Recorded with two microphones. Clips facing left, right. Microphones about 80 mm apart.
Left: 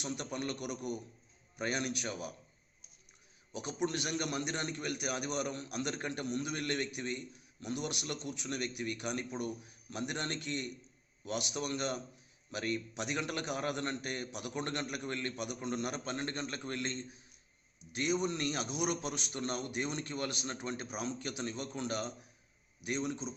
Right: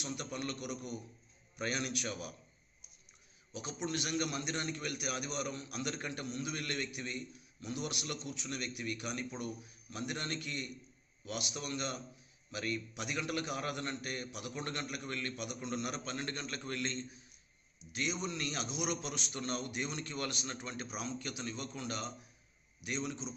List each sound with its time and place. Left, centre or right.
0.0 s speech: left
1.5 s a man's voice: left
3.5 s a man's voice: left
6.5 s a man's voice: left
7.6 s a man's voice: left
12.5 s a man's voice: left
17.9 s a man's voice: left